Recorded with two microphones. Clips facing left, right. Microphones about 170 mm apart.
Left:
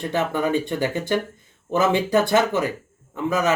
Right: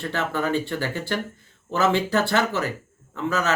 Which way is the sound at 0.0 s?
15° left (ahead or behind).